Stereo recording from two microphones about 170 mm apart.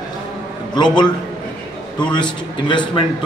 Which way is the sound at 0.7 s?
25° left (ahead or behind).